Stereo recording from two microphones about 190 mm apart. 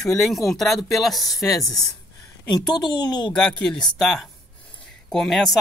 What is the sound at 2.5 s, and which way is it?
Speech, 20° left (ahead or behind).